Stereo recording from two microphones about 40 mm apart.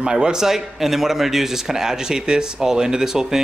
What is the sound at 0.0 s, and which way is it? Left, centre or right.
Speech, right.